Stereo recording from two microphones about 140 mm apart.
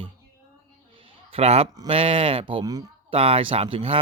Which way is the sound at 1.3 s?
50° right (ahead or behind).